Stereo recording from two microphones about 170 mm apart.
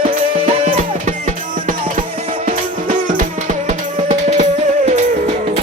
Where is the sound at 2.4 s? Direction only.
45° right (ahead or behind).